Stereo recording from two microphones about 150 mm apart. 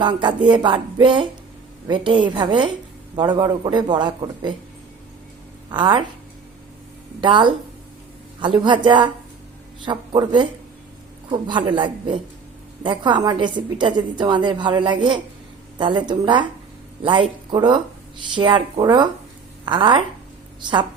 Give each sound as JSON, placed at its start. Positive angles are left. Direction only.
{"t": 0.0, "sound": "a woman's voice", "side_deg": -30}
{"t": 5.7, "sound": "a woman's voice", "side_deg": -30}
{"t": 7.2, "sound": "a woman's voice", "side_deg": -30}